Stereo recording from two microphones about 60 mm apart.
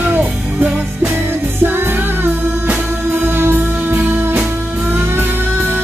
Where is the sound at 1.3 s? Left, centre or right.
Right.